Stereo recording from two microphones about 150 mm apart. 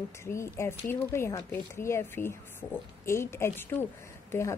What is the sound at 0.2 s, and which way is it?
Speech, 20° left (ahead or behind).